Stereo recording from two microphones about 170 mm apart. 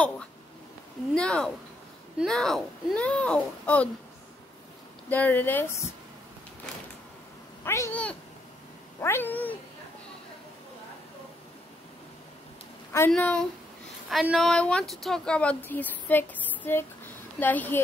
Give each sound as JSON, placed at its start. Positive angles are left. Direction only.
{"t": 1.1, "sound": "speech", "side_deg": 5}
{"t": 5.1, "sound": "speech", "side_deg": 10}
{"t": 7.6, "sound": "speech", "side_deg": 15}
{"t": 9.0, "sound": "speech", "side_deg": 15}
{"t": 13.1, "sound": "speech", "side_deg": 5}